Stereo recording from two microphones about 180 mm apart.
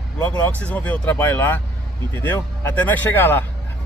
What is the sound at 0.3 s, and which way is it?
Speech, 10° left (ahead or behind).